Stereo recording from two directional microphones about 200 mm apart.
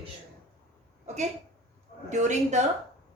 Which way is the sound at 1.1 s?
35° right (ahead or behind).